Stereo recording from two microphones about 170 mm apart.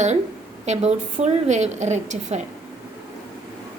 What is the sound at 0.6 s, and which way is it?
A woman's voice, 40° right (ahead or behind).